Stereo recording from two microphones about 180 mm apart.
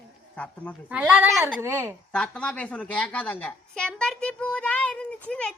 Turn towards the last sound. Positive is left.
turn(degrees=5)  # may be behind; listen again after turning